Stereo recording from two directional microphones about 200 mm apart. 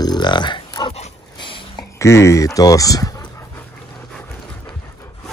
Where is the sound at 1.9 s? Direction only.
15° left (ahead or behind).